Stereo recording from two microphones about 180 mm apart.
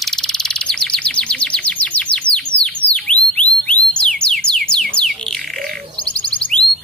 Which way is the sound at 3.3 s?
5° left (ahead or behind).